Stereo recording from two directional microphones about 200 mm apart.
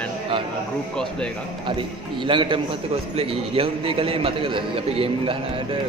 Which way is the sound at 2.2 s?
25° right (ahead or behind).